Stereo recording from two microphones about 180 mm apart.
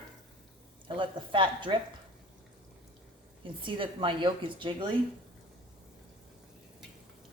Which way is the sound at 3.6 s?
30° right (ahead or behind).